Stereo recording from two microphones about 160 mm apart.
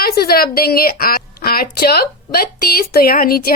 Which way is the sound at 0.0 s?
75° left (ahead or behind).